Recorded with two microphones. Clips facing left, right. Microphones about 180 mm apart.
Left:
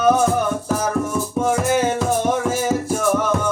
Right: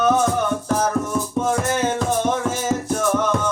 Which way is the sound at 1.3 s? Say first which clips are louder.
Left 4 dB; 10° left (ahead or behind).